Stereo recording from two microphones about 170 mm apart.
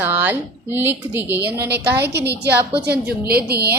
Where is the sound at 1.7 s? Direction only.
75° right (ahead or behind).